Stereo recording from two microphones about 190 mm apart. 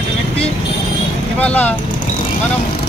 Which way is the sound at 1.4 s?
10° left (ahead or behind).